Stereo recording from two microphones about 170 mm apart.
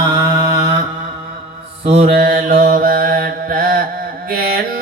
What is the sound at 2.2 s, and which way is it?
Mantra, 55° right (ahead or behind).